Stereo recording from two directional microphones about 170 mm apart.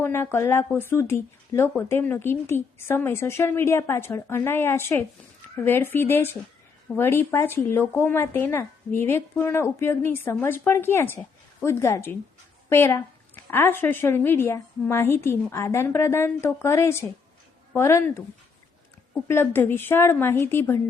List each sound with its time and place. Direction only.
0.0 s speech: 15° left (ahead or behind)